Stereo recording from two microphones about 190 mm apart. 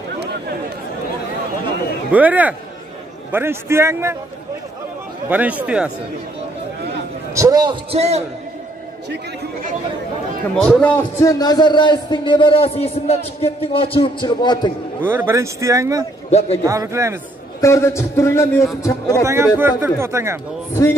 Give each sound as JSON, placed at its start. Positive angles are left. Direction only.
{"t": 0.2, "sound": "chatter", "side_deg": -60}
{"t": 2.1, "sound": "speech", "side_deg": -10}
{"t": 5.3, "sound": "speech", "side_deg": -10}
{"t": 7.3, "sound": "a man's voice", "side_deg": -20}
{"t": 10.5, "sound": "a man's voice", "side_deg": 5}
{"t": 15.0, "sound": "speech", "side_deg": -10}
{"t": 16.3, "sound": "a man's voice", "side_deg": 35}
{"t": 16.6, "sound": "speech", "side_deg": -15}
{"t": 17.6, "sound": "a man's voice", "side_deg": 15}
{"t": 19.2, "sound": "speech", "side_deg": -15}